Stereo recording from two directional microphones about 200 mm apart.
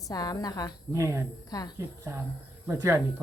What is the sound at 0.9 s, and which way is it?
Speech, 15° right (ahead or behind).